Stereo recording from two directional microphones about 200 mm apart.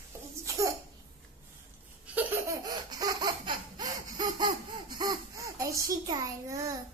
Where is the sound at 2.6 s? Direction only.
20° right (ahead or behind).